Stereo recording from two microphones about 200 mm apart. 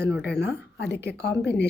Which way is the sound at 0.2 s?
55° left (ahead or behind).